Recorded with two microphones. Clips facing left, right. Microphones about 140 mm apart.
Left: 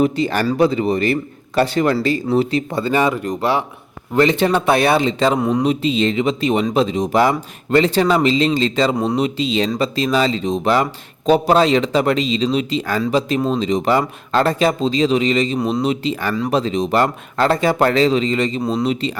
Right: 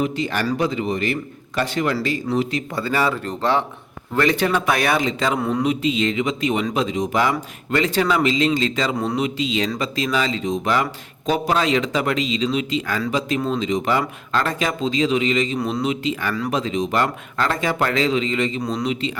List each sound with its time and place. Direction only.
0.0 s a man's voice: 35° left (ahead or behind); by 3.6 s 10° left (ahead or behind)
4.1 s speech: 25° left (ahead or behind)
5.4 s speech: 20° left (ahead or behind)
5.6 s a man's voice: 30° left (ahead or behind)
15.5 s speech: 20° left (ahead or behind)
15.8 s a man's voice: 35° left (ahead or behind)